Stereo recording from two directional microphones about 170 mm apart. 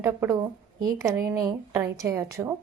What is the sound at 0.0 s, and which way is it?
A woman's voice, 15° right (ahead or behind).